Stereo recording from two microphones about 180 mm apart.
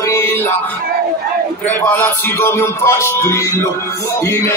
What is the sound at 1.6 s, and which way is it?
Music, 10° left (ahead or behind).